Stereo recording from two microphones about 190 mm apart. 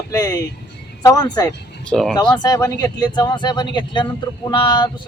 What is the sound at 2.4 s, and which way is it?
Speech, 20° left (ahead or behind).